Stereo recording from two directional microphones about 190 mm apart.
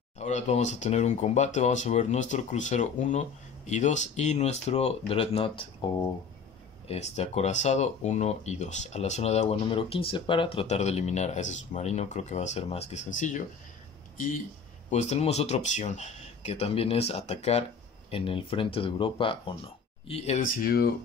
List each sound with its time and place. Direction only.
0.2 s speech: 40° left (ahead or behind)
6.9 s speech: 35° left (ahead or behind)
14.9 s speech: 35° left (ahead or behind)
20.4 s speech: 50° left (ahead or behind)